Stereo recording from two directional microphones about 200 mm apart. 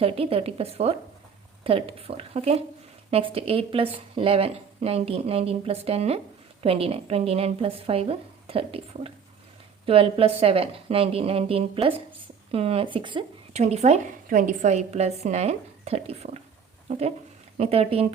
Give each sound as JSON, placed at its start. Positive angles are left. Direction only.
{"t": 0.0, "sound": "speech", "side_deg": -30}
{"t": 17.6, "sound": "speech", "side_deg": -30}